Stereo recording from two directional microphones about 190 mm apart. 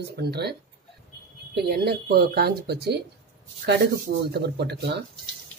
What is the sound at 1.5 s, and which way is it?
Speech, 60° right (ahead or behind).